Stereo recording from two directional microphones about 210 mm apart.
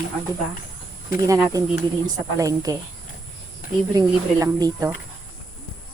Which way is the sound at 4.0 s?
20° right (ahead or behind).